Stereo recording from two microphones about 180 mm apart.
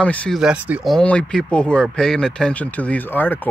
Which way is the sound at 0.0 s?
5° left (ahead or behind).